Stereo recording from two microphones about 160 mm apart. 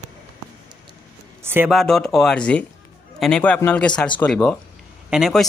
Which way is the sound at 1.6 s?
Centre (ahead or behind).